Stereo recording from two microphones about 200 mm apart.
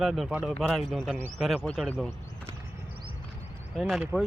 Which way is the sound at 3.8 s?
Centre (ahead or behind).